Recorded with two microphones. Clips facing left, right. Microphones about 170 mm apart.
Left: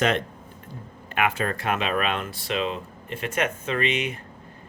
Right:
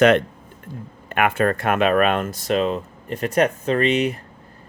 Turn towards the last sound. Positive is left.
turn(degrees=-35)  # may be behind; listen again after turning